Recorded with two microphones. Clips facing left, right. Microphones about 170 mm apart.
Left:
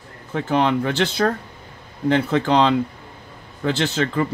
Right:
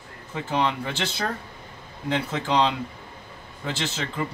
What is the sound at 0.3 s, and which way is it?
Speech, 60° left (ahead or behind).